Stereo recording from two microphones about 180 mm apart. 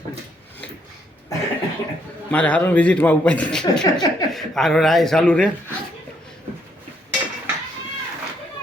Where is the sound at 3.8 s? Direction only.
20° left (ahead or behind).